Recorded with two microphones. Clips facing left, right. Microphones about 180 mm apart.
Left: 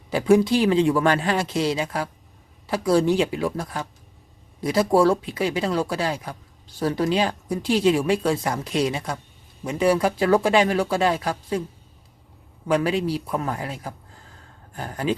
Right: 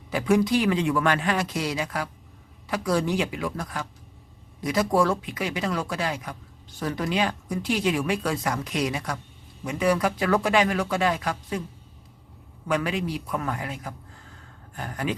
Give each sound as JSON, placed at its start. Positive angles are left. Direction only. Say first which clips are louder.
{"t": 0.1, "sound": "speech", "louder": "left 4 dB", "side_deg": 30}
{"t": 12.6, "sound": "speech", "louder": "left 5 dB", "side_deg": 30}